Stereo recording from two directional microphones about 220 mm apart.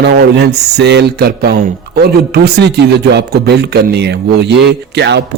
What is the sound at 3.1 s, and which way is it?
Speech, 50° right (ahead or behind).